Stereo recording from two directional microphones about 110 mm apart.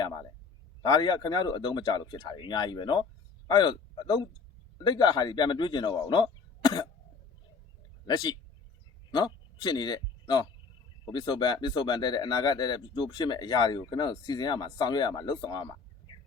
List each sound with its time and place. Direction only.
0.9 s speech: 40° left (ahead or behind)
8.0 s speech: 40° left (ahead or behind)